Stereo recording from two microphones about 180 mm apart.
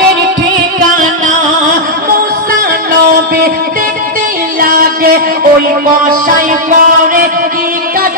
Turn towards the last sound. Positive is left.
turn(degrees=-50)  # may be behind; listen again after turning